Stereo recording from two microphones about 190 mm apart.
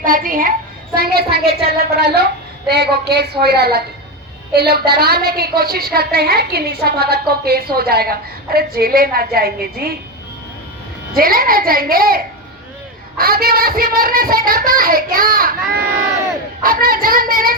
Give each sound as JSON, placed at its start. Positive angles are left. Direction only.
{"t": 0.0, "sound": "a woman's voice", "side_deg": -50}
{"t": 11.1, "sound": "speech", "side_deg": -50}